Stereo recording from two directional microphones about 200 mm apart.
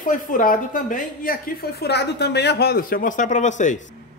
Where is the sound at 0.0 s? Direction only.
40° left (ahead or behind).